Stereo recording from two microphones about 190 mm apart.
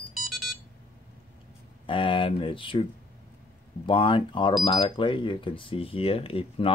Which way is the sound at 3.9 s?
25° left (ahead or behind).